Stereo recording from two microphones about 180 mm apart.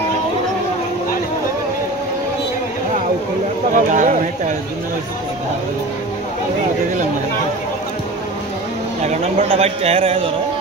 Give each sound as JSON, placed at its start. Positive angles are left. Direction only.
{"t": 3.7, "sound": "speech", "side_deg": -45}
{"t": 9.0, "sound": "a man's voice", "side_deg": -40}